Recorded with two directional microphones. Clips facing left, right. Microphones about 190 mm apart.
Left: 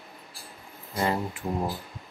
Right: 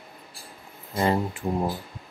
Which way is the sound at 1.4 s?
15° right (ahead or behind).